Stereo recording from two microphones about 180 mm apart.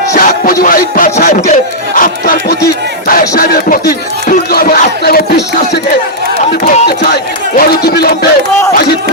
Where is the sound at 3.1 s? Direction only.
55° left (ahead or behind).